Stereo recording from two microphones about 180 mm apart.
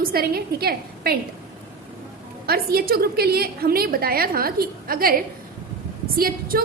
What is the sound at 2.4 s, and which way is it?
A woman's voice, 60° right (ahead or behind).